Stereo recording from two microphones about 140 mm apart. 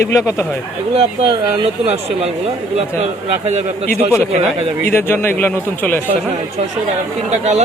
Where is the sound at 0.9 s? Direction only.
35° right (ahead or behind).